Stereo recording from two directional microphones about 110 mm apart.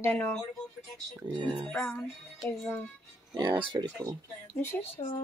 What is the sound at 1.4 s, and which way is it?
Speech, 40° right (ahead or behind).